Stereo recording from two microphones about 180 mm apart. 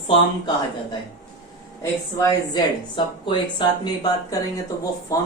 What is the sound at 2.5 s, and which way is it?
Speech, 25° left (ahead or behind).